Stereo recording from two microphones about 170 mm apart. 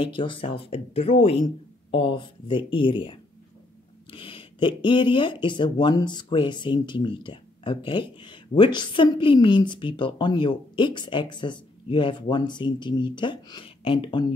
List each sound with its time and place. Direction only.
0.0 s speech: 30° left (ahead or behind)